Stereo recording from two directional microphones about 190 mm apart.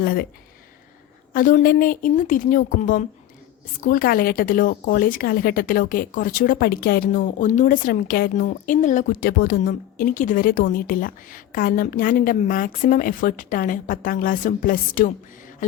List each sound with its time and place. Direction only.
0.0 s a woman's voice: 50° left (ahead or behind)
1.3 s a woman's voice: 45° left (ahead or behind)